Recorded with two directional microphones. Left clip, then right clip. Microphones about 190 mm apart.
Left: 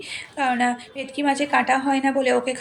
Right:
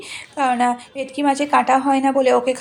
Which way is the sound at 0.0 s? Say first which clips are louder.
Right 3 dB; 25° right (ahead or behind).